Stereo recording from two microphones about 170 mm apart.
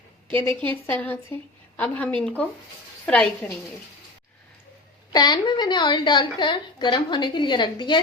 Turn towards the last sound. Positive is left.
turn(degrees=25)  # may be behind; listen again after turning